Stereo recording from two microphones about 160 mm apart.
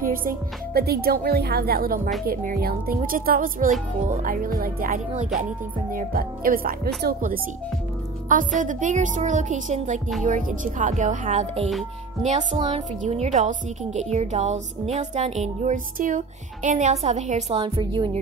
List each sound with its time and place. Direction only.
0.0 s a woman's voice: 60° right (ahead or behind)
2.2 s music: 70° right (ahead or behind)
7.0 s a woman's voice: 70° right (ahead or behind)
8.3 s speech: 55° right (ahead or behind)
12.5 s a woman's voice: 30° right (ahead or behind)
13.0 s a woman's voice: 45° right (ahead or behind)